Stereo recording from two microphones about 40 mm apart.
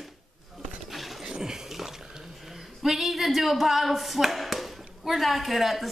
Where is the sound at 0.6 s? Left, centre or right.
Centre.